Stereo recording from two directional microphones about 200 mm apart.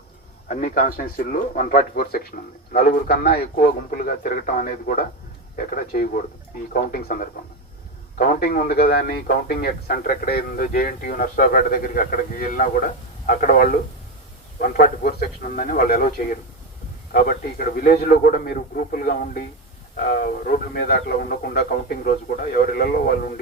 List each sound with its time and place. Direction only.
0.4 s speech: 40° left (ahead or behind)